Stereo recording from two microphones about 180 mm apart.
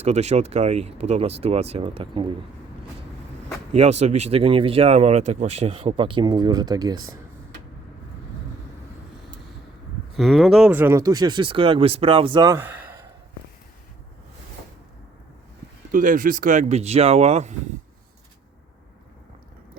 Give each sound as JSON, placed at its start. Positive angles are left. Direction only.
{"t": 0.0, "sound": "speech", "side_deg": -40}
{"t": 3.7, "sound": "speech", "side_deg": -40}
{"t": 10.2, "sound": "speech", "side_deg": 0}
{"t": 15.9, "sound": "speech", "side_deg": -45}